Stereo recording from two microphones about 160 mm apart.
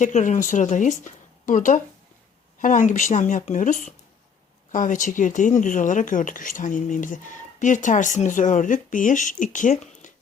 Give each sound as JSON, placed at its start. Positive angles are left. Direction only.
{"t": 0.0, "sound": "speech", "side_deg": 50}